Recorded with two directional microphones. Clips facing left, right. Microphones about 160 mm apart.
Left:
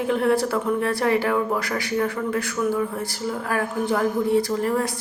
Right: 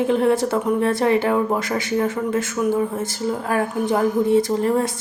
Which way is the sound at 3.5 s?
20° right (ahead or behind).